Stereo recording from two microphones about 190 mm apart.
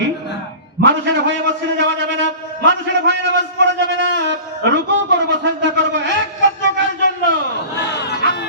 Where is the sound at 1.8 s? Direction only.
65° right (ahead or behind).